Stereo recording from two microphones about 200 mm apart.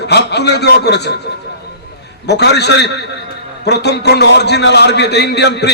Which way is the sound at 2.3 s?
55° left (ahead or behind).